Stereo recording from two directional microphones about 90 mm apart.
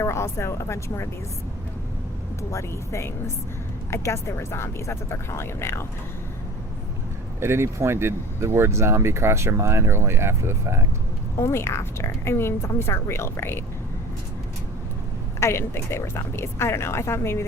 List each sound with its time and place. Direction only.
0.0 s speech: 30° left (ahead or behind)
2.5 s a woman's voice: 35° left (ahead or behind)
7.3 s speech: 30° right (ahead or behind)
11.3 s a woman's voice: 30° left (ahead or behind)
15.4 s a woman's voice: 30° left (ahead or behind)